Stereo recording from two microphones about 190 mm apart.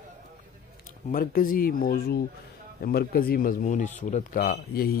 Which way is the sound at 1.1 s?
50° left (ahead or behind).